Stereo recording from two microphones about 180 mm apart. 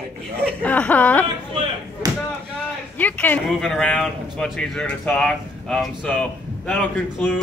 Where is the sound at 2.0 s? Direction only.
20° right (ahead or behind).